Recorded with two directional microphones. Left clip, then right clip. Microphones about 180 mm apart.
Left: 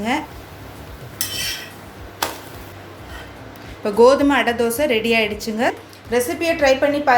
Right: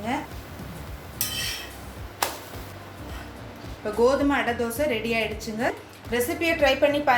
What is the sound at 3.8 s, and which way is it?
A woman's voice, 45° left (ahead or behind).